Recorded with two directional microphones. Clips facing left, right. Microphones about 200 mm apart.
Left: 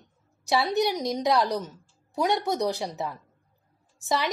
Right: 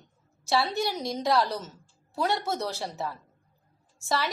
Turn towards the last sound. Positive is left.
turn(degrees=20)  # may be behind; listen again after turning